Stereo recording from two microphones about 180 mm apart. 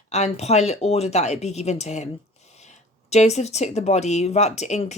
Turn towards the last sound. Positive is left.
turn(degrees=40)  # may be behind; listen again after turning